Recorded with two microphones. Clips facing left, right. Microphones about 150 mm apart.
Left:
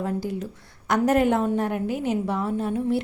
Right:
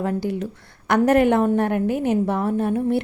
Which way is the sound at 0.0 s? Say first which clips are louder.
Right 4 dB; 70° right (ahead or behind).